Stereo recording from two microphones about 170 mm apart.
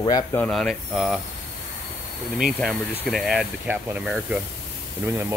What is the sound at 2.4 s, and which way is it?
Speech, centre (ahead or behind).